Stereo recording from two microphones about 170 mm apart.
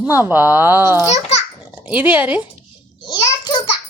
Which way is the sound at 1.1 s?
40° left (ahead or behind).